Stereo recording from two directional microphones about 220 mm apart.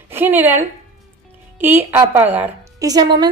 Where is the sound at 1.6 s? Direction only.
10° right (ahead or behind).